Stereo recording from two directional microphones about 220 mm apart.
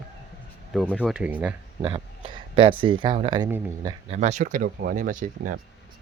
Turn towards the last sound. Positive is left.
turn(degrees=-35)  # may be behind; listen again after turning